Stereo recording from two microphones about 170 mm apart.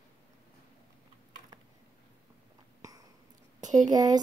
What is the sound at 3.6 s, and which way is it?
Speech, 20° right (ahead or behind).